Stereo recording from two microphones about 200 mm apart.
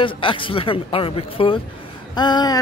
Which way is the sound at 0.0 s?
25° left (ahead or behind).